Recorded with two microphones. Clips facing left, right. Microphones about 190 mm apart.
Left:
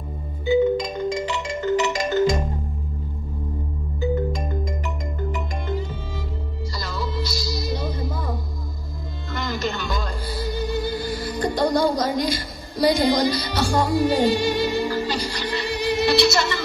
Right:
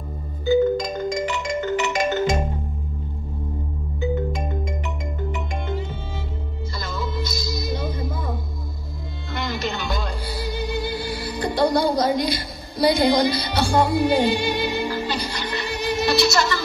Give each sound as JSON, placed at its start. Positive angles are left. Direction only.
{"t": 0.6, "sound": "music", "side_deg": -5}
{"t": 1.2, "sound": "music", "side_deg": 30}
{"t": 4.0, "sound": "music", "side_deg": 0}
{"t": 7.0, "sound": "music", "side_deg": 35}
{"t": 9.3, "sound": "music", "side_deg": 45}